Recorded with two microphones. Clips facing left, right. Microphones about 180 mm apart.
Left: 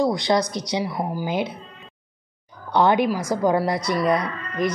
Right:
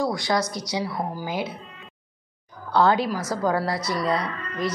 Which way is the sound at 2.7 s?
20° left (ahead or behind).